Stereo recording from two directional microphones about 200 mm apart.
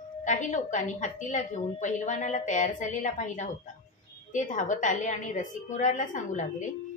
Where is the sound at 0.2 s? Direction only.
40° left (ahead or behind).